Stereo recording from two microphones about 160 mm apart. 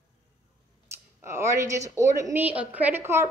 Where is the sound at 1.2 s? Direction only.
15° right (ahead or behind).